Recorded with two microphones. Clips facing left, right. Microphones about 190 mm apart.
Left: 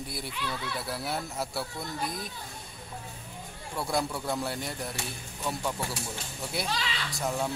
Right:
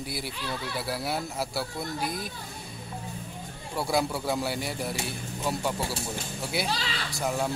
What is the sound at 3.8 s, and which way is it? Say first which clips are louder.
Speech: right 3 dB; 5° right (ahead or behind).